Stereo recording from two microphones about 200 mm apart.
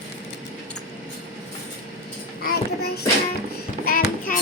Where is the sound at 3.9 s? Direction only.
45° left (ahead or behind).